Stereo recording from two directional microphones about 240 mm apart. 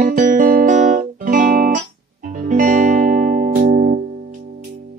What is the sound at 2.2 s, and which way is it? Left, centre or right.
Music, right.